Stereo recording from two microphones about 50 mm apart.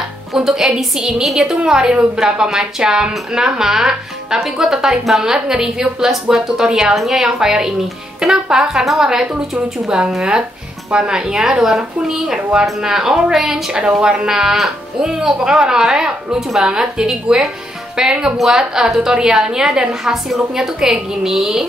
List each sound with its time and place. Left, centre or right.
0.3 s speech: centre
9.3 s speech: right